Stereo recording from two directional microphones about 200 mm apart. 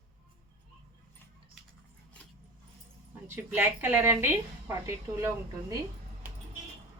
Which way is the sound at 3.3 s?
10° right (ahead or behind).